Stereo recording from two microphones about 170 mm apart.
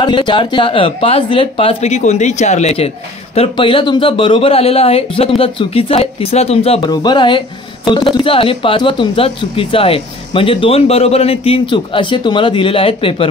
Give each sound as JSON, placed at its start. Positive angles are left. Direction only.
{"t": 0.0, "sound": "speech", "side_deg": 30}
{"t": 6.9, "sound": "speech", "side_deg": 25}